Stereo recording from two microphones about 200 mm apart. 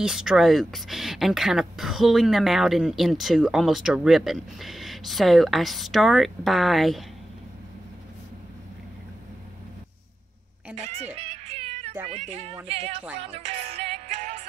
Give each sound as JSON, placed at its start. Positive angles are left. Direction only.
{"t": 0.0, "sound": "speech", "side_deg": -5}
{"t": 11.1, "sound": "music", "side_deg": -30}
{"t": 12.1, "sound": "a sound", "side_deg": -30}
{"t": 12.6, "sound": "a woman's voice", "side_deg": -30}
{"t": 13.2, "sound": "music", "side_deg": -30}